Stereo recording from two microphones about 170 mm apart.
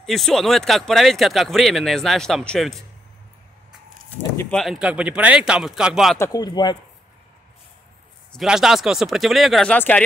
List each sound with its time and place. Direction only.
0.0 s speech: centre (ahead or behind)
4.4 s speech: 5° left (ahead or behind)
6.1 s speech: 20° left (ahead or behind)
8.3 s speech: centre (ahead or behind)